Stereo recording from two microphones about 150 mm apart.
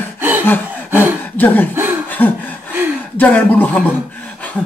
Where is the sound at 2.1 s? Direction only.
10° left (ahead or behind).